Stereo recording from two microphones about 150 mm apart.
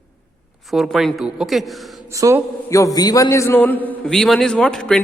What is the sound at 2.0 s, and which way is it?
Speech, 20° right (ahead or behind).